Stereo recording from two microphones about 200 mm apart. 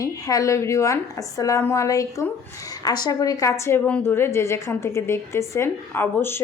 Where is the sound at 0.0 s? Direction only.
15° left (ahead or behind).